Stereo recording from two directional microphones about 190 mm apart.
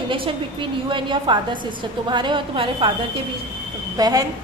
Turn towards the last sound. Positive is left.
turn(degrees=-20)  # may be behind; listen again after turning